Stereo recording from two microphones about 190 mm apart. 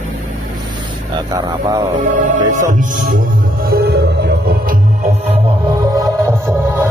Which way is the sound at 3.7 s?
55° right (ahead or behind).